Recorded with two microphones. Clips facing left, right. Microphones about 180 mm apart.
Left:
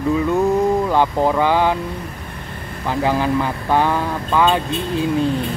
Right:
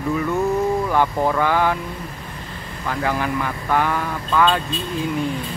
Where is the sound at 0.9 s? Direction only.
20° left (ahead or behind).